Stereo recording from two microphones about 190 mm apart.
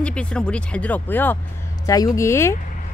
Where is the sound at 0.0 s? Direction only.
5° left (ahead or behind).